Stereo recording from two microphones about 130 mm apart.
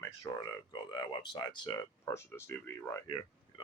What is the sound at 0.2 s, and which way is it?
Speech, 30° left (ahead or behind).